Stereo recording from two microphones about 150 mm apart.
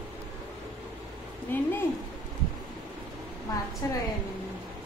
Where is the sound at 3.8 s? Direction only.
20° left (ahead or behind).